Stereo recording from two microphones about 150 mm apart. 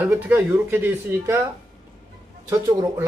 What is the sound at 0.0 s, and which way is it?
Speech, 10° right (ahead or behind).